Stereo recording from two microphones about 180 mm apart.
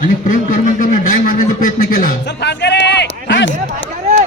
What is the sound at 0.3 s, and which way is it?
A man's voice, 50° left (ahead or behind).